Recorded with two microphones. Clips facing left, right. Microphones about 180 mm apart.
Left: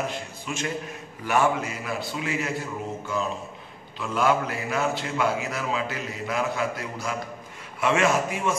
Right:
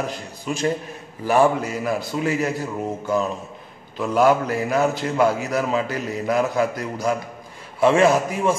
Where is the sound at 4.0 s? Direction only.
40° right (ahead or behind).